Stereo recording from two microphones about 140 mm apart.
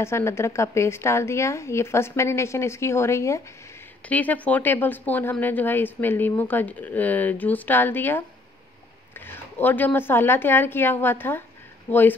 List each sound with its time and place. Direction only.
0.0 s speech: 20° left (ahead or behind)